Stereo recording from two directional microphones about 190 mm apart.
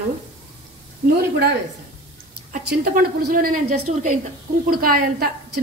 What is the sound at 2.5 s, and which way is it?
A woman's voice, 45° right (ahead or behind).